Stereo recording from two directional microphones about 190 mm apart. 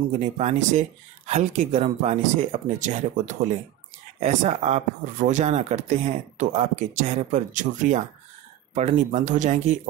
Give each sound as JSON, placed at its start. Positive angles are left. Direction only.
{"t": 0.4, "sound": "speech", "side_deg": -40}